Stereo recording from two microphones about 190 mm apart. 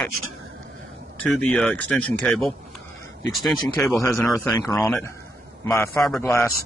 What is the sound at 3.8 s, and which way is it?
Speech, 15° left (ahead or behind).